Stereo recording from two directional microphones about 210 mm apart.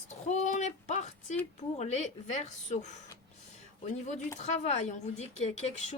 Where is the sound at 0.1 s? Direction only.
35° left (ahead or behind).